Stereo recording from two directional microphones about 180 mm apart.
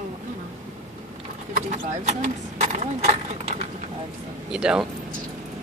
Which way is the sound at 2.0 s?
40° right (ahead or behind).